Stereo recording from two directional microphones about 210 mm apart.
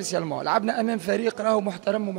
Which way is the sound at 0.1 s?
20° right (ahead or behind).